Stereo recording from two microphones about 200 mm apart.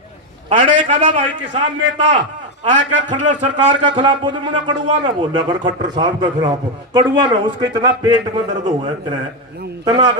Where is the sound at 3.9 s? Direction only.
25° right (ahead or behind).